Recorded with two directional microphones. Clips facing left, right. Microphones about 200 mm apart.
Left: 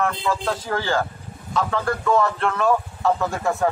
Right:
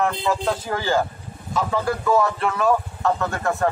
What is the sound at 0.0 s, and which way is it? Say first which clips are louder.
A man's voice: right 1 dB; 15° right (ahead or behind).